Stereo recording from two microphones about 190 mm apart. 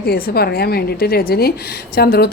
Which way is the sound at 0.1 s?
55° left (ahead or behind).